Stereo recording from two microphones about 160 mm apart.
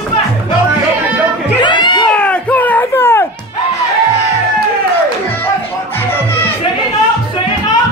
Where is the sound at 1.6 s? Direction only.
30° left (ahead or behind).